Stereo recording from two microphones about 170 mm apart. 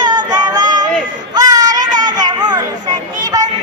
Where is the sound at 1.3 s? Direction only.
20° right (ahead or behind).